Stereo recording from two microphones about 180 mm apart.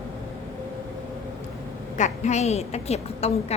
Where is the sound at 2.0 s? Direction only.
40° left (ahead or behind).